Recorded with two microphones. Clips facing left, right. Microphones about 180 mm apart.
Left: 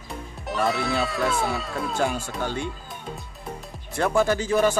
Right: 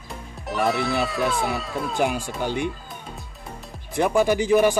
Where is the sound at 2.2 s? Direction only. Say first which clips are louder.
Right 3 dB; 15° right (ahead or behind).